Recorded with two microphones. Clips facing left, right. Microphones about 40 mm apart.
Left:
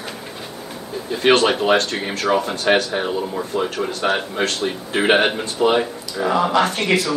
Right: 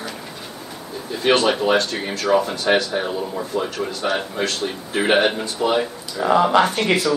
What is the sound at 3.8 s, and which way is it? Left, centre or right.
Speech, left.